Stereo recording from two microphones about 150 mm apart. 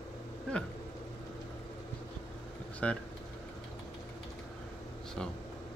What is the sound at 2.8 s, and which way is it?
Speech, 5° left (ahead or behind).